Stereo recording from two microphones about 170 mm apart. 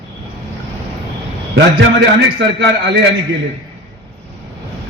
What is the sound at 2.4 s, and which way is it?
Speech, 90° right.